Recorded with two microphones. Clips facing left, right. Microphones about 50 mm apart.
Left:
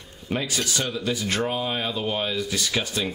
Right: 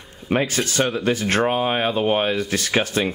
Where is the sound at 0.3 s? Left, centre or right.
Right.